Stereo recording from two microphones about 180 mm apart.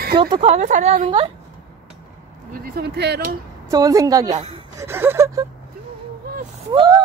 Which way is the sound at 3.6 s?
20° right (ahead or behind).